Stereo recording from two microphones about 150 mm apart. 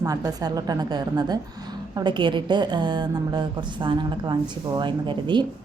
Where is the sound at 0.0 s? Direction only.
25° right (ahead or behind).